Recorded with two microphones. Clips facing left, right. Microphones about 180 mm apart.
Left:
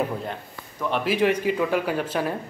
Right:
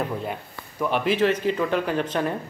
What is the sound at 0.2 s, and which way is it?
Speech, 5° right (ahead or behind).